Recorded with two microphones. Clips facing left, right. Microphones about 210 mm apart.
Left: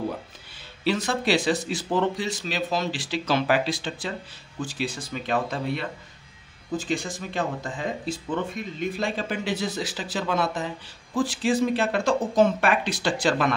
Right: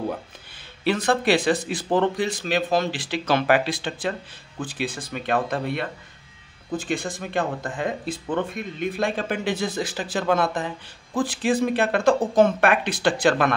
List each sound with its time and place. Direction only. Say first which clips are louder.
0.8 s speech: right 3 dB; 55° right (ahead or behind)